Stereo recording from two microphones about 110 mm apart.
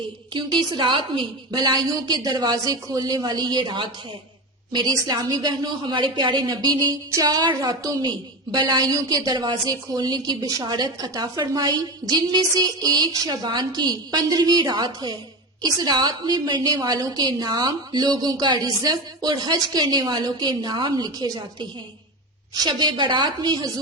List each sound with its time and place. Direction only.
0.3 s a woman's voice: 45° right (ahead or behind)